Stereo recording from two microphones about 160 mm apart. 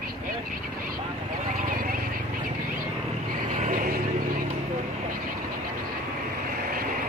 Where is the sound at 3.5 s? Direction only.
55° right (ahead or behind).